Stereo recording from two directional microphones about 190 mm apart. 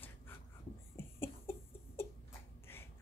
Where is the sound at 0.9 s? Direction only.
10° left (ahead or behind).